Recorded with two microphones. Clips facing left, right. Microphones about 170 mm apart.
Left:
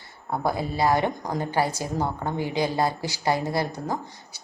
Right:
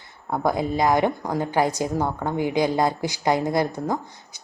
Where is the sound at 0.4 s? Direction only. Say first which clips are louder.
Right 3 dB; 15° right (ahead or behind).